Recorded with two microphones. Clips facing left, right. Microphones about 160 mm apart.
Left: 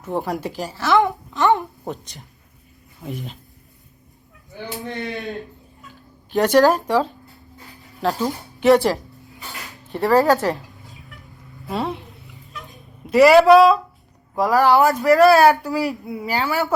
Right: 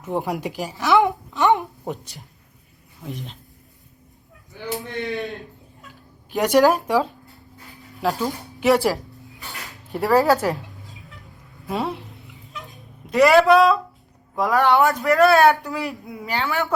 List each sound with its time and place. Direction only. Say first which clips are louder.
0.0 s speech: even; 15° right (ahead or behind)
1.4 s a sound: left 1 dB; 15° right (ahead or behind)
3.0 s speech: left 3 dB; centre (ahead or behind)
4.5 s speech: right 1 dB; 40° left (ahead or behind)
6.3 s speech: left 1 dB; 10° right (ahead or behind)
9.9 s speech: left 1 dB; 10° right (ahead or behind)
10.4 s a sound: left 1 dB; centre (ahead or behind)
11.7 s speech: left 1 dB; centre (ahead or behind)
13.1 s speech: left 3 dB; 5° left (ahead or behind)